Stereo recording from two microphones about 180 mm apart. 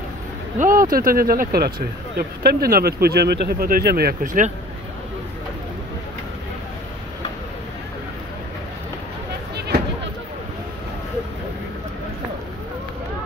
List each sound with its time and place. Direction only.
0.6 s speech: 50° right (ahead or behind)